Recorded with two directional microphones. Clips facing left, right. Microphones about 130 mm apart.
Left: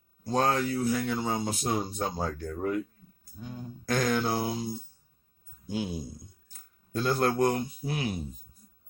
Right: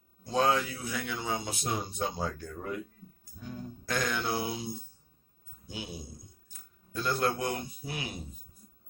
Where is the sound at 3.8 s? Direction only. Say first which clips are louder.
Left 5 dB; 45° left (ahead or behind).